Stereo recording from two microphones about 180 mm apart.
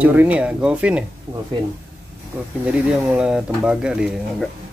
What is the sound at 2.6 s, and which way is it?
Speech, 5° right (ahead or behind).